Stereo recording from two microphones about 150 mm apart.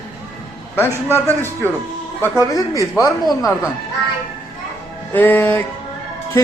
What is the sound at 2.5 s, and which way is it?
Speech, 20° left (ahead or behind).